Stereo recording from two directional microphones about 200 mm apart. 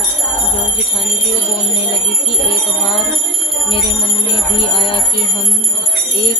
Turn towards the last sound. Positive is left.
turn(degrees=25)  # may be behind; listen again after turning